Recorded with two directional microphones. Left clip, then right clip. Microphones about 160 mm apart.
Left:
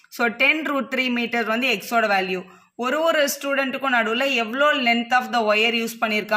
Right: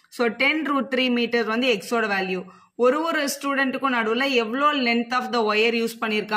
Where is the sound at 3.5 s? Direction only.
15° left (ahead or behind).